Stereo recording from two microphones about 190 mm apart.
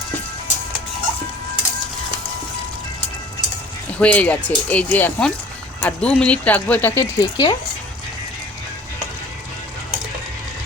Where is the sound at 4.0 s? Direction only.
5° left (ahead or behind).